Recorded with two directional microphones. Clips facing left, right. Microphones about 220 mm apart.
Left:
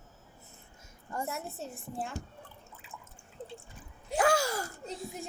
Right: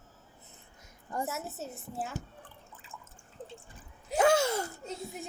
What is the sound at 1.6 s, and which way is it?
Speech, 5° right (ahead or behind).